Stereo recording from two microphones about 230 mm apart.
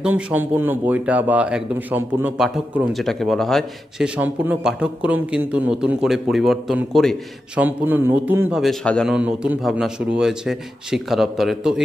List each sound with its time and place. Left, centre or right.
0.0 s a man's voice: centre